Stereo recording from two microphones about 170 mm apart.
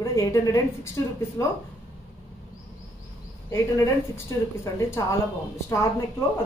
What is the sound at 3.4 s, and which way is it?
A woman's voice, 15° left (ahead or behind).